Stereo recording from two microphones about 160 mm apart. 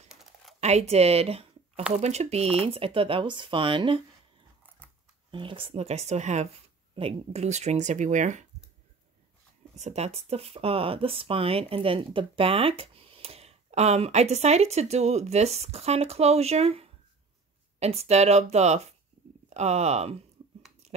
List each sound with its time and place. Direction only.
0.1 s a sound: centre (ahead or behind)
0.6 s speech: 40° right (ahead or behind)
5.3 s speech: 30° right (ahead or behind); by 8.5 s 50° right (ahead or behind)
9.8 s speech: 45° right (ahead or behind)